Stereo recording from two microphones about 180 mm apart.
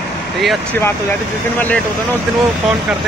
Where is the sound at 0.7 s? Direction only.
10° left (ahead or behind).